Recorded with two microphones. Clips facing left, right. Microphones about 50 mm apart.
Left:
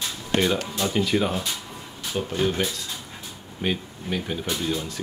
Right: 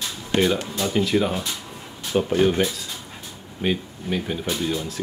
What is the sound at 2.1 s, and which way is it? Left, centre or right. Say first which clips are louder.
Speech: right 6 dB; centre.